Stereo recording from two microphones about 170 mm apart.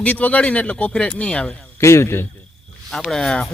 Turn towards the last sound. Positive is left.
turn(degrees=5)  # may be behind; listen again after turning